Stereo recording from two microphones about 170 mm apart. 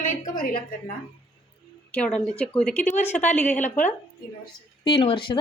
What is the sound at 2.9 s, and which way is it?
Speech, 45° left (ahead or behind).